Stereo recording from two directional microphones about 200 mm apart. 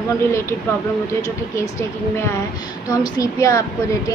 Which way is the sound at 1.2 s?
15° left (ahead or behind).